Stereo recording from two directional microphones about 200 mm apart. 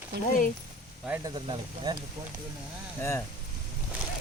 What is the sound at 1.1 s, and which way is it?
Speech, 20° right (ahead or behind).